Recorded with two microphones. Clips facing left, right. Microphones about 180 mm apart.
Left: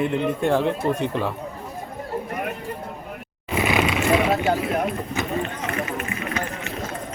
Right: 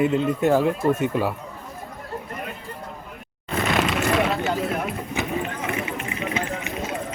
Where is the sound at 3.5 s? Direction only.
10° left (ahead or behind).